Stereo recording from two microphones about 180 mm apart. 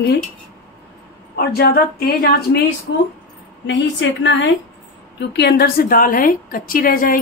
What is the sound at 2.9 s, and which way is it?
A woman's voice, 70° left (ahead or behind).